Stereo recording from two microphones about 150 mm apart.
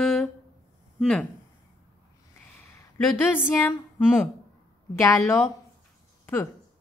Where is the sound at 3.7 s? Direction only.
10° left (ahead or behind).